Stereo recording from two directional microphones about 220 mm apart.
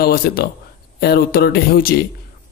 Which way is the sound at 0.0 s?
45° left (ahead or behind).